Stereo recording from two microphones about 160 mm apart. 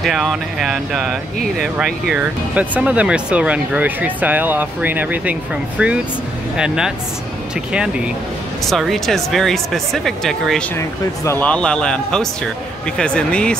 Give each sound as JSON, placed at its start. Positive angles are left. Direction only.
{"t": 0.0, "sound": "speech", "side_deg": 0}
{"t": 8.6, "sound": "speech", "side_deg": 0}